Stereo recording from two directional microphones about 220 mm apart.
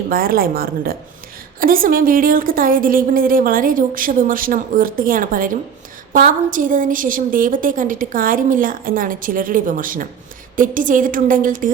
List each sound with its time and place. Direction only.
0.1 s a woman's voice: 40° right (ahead or behind)